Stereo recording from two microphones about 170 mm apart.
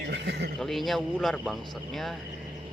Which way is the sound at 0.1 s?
75° right (ahead or behind).